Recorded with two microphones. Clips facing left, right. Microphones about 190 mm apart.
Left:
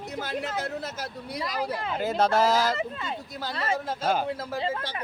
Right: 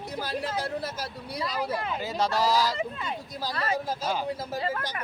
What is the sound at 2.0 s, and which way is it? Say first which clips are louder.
Speech: left 6 dB; 55° left (ahead or behind).